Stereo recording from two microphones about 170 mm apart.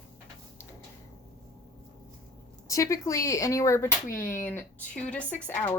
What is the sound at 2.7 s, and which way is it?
Speech, 20° left (ahead or behind).